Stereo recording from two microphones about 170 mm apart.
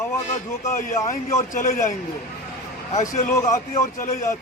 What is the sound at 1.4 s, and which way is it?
A man's voice, 45° left (ahead or behind).